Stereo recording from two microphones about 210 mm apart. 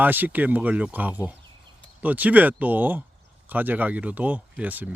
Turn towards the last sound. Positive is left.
turn(degrees=-10)  # may be behind; listen again after turning